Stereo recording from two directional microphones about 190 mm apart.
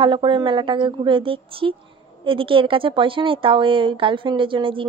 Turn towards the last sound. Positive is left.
turn(degrees=-25)  # may be behind; listen again after turning